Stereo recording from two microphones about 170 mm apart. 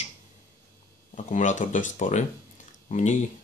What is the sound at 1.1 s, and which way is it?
Speech, 45° left (ahead or behind).